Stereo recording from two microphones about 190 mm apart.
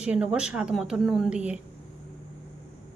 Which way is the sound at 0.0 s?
5° right (ahead or behind).